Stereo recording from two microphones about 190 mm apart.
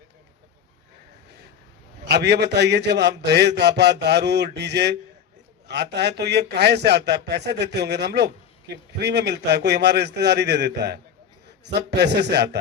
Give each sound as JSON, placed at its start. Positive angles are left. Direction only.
{"t": 2.0, "sound": "a man's voice", "side_deg": -60}